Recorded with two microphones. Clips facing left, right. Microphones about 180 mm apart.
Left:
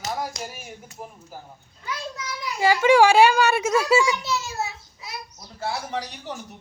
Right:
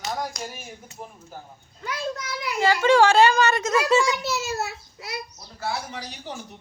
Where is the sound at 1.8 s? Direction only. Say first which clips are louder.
Right 3 dB; 65° right (ahead or behind).